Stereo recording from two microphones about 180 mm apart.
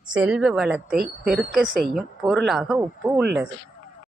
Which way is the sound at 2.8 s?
15° right (ahead or behind).